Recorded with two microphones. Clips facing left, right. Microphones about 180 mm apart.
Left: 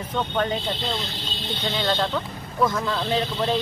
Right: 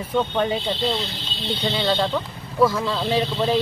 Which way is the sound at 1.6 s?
15° right (ahead or behind).